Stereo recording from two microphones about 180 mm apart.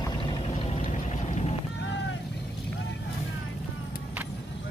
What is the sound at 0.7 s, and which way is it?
Vehicle, 40° left (ahead or behind).